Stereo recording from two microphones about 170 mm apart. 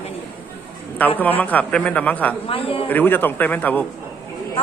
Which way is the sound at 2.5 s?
35° left (ahead or behind).